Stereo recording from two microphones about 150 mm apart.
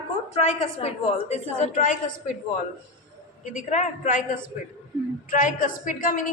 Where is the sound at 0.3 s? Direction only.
50° left (ahead or behind).